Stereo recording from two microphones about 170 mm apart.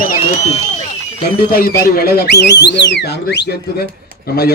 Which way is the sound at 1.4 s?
60° left (ahead or behind).